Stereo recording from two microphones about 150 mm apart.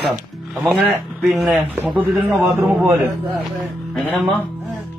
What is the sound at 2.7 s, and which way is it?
A man's voice, 5° right (ahead or behind).